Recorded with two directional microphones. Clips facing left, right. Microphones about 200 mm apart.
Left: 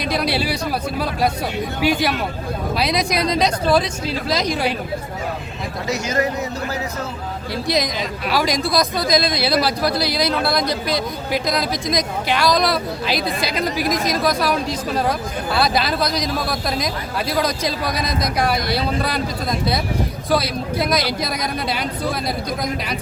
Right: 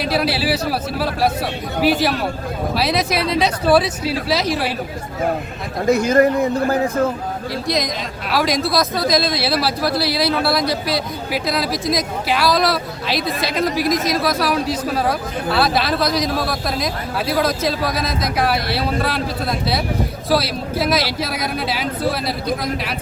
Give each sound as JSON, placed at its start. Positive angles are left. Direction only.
{"t": 0.0, "sound": "speech", "side_deg": -5}
{"t": 5.8, "sound": "a man's voice", "side_deg": -55}
{"t": 8.3, "sound": "speech", "side_deg": 0}